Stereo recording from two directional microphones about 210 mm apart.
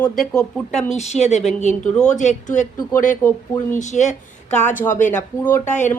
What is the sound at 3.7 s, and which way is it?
A woman's voice, 35° left (ahead or behind).